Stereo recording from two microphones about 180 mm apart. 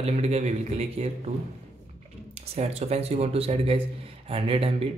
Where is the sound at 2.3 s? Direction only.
35° right (ahead or behind).